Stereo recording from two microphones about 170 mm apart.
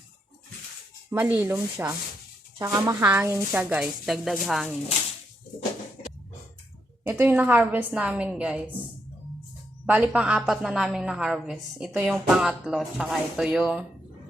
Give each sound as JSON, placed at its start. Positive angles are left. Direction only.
{"t": 1.1, "sound": "a woman's voice", "side_deg": -10}
{"t": 7.0, "sound": "a woman's voice", "side_deg": -10}
{"t": 9.8, "sound": "a woman's voice", "side_deg": -10}